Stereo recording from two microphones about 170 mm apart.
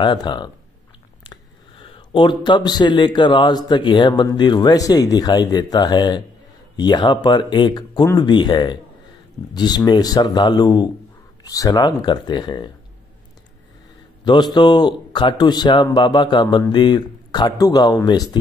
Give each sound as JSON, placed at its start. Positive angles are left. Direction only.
{"t": 0.0, "sound": "speech", "side_deg": 25}
{"t": 14.2, "sound": "speech", "side_deg": 25}